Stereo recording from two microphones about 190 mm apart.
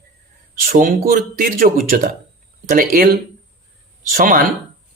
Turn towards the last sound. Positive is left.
turn(degrees=-50)  # may be behind; listen again after turning